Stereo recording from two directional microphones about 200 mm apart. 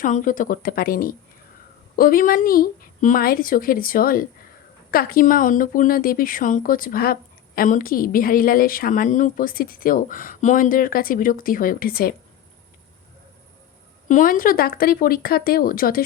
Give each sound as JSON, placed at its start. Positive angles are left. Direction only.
{"t": 0.0, "sound": "speech", "side_deg": 40}
{"t": 14.1, "sound": "speech", "side_deg": 45}